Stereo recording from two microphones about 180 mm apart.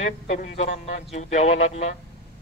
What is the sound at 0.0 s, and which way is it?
A woman's voice, 40° left (ahead or behind).